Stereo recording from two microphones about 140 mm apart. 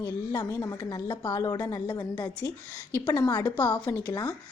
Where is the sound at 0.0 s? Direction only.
25° left (ahead or behind).